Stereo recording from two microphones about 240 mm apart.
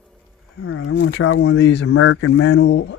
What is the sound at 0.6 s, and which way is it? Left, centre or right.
Speech, left.